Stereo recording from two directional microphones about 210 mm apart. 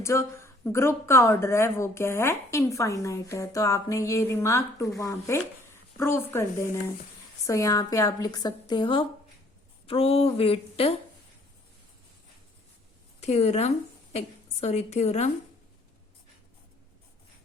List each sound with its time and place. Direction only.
0.0 s a woman's voice: 15° left (ahead or behind)
13.1 s a woman's voice: 30° left (ahead or behind)